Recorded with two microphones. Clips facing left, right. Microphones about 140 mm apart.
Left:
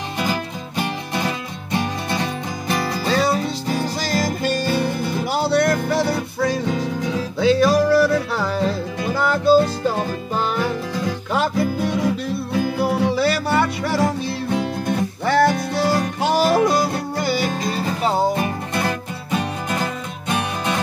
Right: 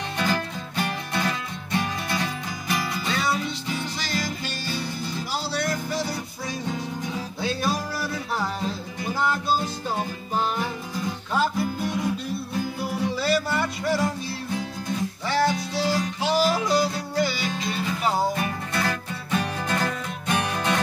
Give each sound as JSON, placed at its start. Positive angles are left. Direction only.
{"t": 0.2, "sound": "music", "side_deg": 15}
{"t": 2.7, "sound": "music", "side_deg": 35}
{"t": 18.0, "sound": "music", "side_deg": 25}
{"t": 19.3, "sound": "music", "side_deg": 10}